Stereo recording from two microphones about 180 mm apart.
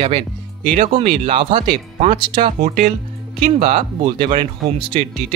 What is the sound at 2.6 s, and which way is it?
Speech, 45° right (ahead or behind).